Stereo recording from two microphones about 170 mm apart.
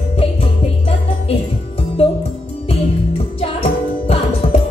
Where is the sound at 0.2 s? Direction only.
35° left (ahead or behind).